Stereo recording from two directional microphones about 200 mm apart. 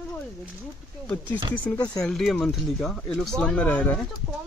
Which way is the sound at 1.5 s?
10° left (ahead or behind).